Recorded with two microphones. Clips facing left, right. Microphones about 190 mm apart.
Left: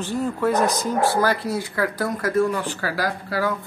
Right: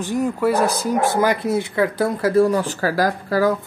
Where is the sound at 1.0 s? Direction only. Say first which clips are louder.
Right 2 dB; 20° right (ahead or behind); by 3.5 s 45° right (ahead or behind).